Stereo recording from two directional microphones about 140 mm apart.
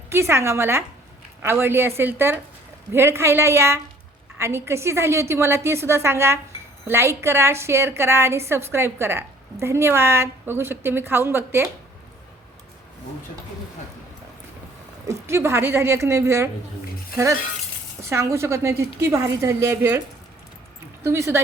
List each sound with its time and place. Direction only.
0.1 s a woman's voice: 20° right (ahead or behind)
15.0 s a woman's voice: 20° right (ahead or behind)
18.1 s a woman's voice: 20° right (ahead or behind)
21.0 s a woman's voice: 20° right (ahead or behind)